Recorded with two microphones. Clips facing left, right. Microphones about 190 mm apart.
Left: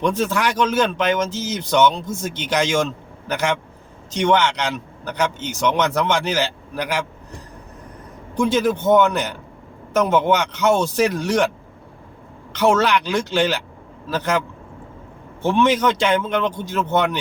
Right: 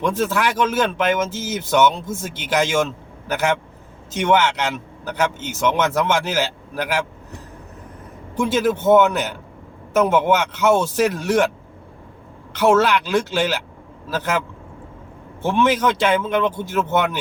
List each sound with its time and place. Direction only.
0.0 s speech: 5° right (ahead or behind)
4.1 s speech: 5° right (ahead or behind)
8.4 s speech: 5° right (ahead or behind)
12.5 s speech: 5° right (ahead or behind)
15.4 s speech: 5° right (ahead or behind)